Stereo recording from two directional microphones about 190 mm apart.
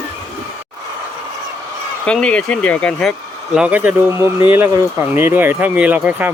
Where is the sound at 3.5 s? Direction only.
5° right (ahead or behind).